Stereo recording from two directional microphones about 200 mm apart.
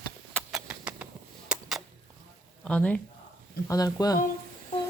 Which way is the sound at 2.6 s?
5° left (ahead or behind).